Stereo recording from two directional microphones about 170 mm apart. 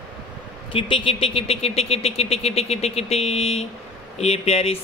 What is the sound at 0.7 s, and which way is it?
A man's voice, 30° left (ahead or behind).